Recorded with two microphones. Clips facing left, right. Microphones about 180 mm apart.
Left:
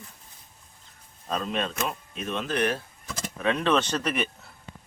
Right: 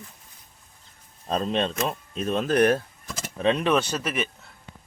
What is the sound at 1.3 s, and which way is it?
Speech, 30° right (ahead or behind).